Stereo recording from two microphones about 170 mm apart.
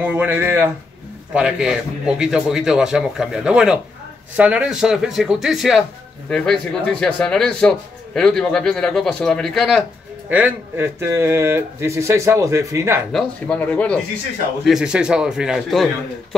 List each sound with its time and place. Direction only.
0.0 s a man's voice: 10° right (ahead or behind)
10.3 s speech: 10° right (ahead or behind)
13.1 s speech: 5° left (ahead or behind)
14.6 s a man's voice: 5° right (ahead or behind)